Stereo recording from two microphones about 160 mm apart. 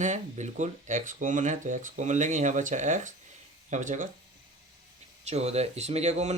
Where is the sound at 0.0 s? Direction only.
45° right (ahead or behind).